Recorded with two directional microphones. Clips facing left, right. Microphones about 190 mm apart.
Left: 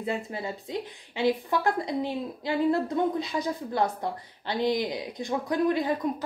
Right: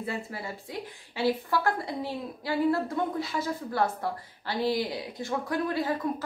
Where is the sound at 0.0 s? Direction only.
20° left (ahead or behind).